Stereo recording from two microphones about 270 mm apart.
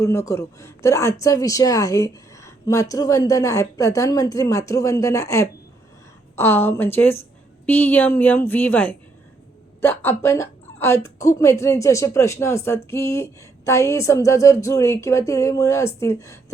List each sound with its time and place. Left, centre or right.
0.0 s a woman's voice: centre